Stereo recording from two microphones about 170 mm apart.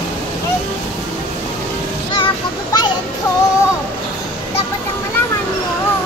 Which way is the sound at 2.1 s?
25° left (ahead or behind).